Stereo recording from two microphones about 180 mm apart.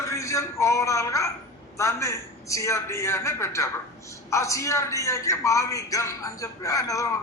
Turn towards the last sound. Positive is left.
turn(degrees=20)  # may be behind; listen again after turning